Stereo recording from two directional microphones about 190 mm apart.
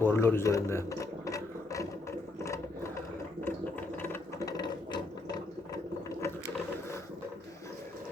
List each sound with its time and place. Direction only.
0.0 s speech: 10° left (ahead or behind)
2.4 s ratchet: 15° left (ahead or behind)